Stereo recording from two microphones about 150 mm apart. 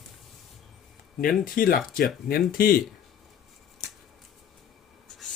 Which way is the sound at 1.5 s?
75° left (ahead or behind).